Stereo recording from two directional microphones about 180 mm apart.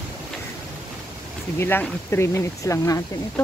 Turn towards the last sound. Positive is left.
turn(degrees=15)  # may be behind; listen again after turning